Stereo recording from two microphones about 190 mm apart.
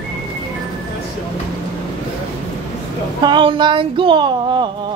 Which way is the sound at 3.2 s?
25° right (ahead or behind).